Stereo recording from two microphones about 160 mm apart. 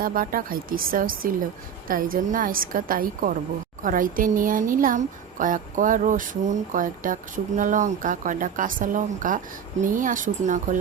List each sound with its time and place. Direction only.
0.0 s speech: 60° right (ahead or behind)